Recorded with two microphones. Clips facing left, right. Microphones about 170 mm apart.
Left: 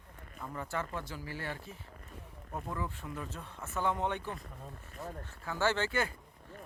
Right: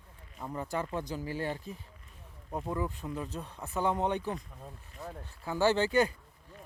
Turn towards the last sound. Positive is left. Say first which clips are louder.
# left 1 dB
turn(degrees=-15)  # may be behind; listen again after turning